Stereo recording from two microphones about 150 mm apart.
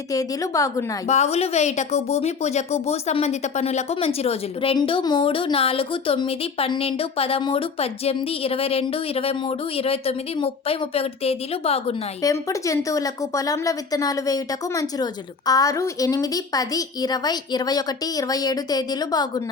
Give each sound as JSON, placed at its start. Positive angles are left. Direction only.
{"t": 0.1, "sound": "a woman's voice", "side_deg": 25}
{"t": 1.0, "sound": "speech", "side_deg": 50}
{"t": 12.2, "sound": "a woman's voice", "side_deg": 20}